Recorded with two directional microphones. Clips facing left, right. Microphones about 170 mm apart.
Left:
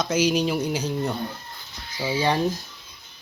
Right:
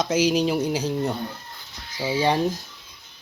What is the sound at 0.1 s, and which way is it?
Speech, 30° right (ahead or behind).